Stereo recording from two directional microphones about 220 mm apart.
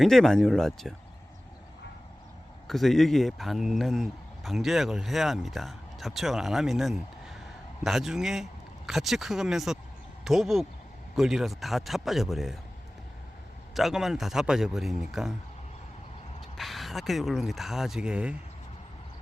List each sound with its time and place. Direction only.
0.0 s speech: centre (ahead or behind)
2.6 s speech: centre (ahead or behind)
13.7 s speech: centre (ahead or behind)
16.6 s speech: centre (ahead or behind)